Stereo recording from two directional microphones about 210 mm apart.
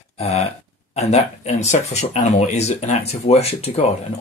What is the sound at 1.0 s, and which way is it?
Speech, 30° left (ahead or behind).